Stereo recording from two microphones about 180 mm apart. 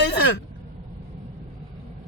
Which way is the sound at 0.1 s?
70° left (ahead or behind).